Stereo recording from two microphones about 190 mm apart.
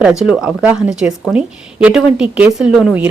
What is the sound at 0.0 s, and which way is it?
A woman's voice, 5° right (ahead or behind).